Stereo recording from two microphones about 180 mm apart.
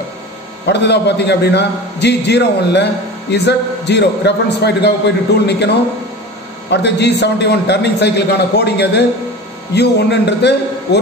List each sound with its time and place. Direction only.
0.7 s a man's voice: 70° left (ahead or behind)